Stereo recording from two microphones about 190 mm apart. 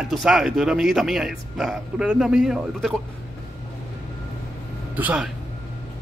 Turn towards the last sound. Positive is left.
turn(degrees=-5)  # may be behind; listen again after turning